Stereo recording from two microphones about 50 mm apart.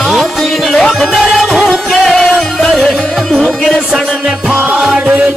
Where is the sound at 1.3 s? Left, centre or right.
Centre.